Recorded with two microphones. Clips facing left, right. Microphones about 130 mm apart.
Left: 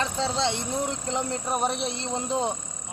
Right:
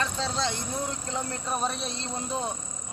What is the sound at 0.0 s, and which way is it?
Speech, 20° left (ahead or behind).